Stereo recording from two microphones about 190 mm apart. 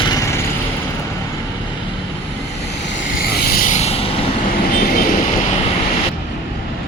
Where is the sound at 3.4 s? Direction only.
45° left (ahead or behind).